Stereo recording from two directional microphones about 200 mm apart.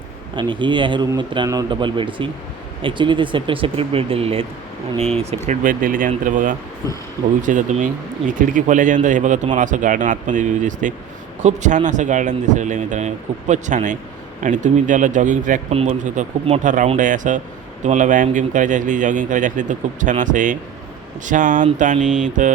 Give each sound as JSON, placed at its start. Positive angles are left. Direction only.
{"t": 0.3, "sound": "speech", "side_deg": -25}
{"t": 5.5, "sound": "speech", "side_deg": -40}